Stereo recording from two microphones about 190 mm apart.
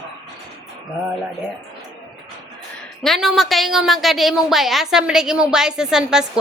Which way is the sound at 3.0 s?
Centre (ahead or behind).